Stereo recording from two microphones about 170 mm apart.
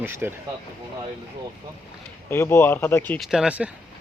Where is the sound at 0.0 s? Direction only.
15° right (ahead or behind).